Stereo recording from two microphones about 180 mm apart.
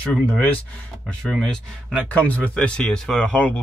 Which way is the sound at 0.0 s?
5° left (ahead or behind).